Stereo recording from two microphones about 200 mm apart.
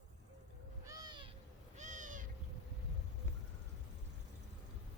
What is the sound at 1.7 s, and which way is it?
Owl, 40° right (ahead or behind).